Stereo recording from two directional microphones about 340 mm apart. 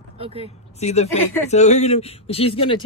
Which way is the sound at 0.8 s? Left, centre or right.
Centre.